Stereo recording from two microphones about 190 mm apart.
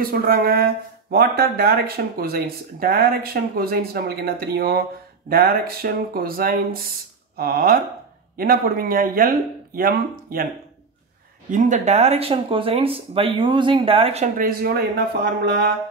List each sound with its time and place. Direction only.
0.0 s speech: 50° right (ahead or behind)
11.5 s speech: 40° right (ahead or behind)
15.4 s a sound: 60° right (ahead or behind)